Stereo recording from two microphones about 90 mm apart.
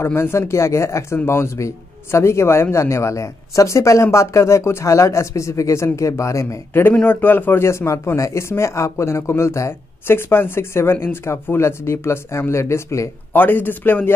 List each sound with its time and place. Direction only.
0.0 s a man's voice: 30° left (ahead or behind)
13.3 s a man's voice: 20° left (ahead or behind)